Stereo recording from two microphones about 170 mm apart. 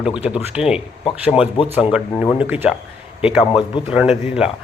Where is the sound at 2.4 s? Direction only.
10° right (ahead or behind).